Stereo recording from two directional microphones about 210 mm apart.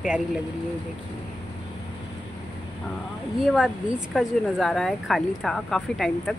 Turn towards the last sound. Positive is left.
turn(degrees=0)  # may be behind; listen again after turning